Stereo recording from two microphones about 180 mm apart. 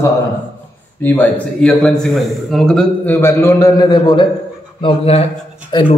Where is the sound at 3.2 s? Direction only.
15° left (ahead or behind).